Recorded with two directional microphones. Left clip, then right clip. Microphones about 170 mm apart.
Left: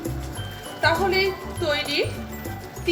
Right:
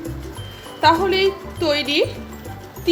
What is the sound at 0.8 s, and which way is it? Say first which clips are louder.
Speech: right 5 dB; 45° right (ahead or behind).